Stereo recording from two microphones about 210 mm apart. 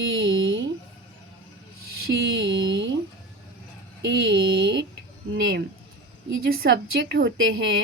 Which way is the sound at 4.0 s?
55° right (ahead or behind).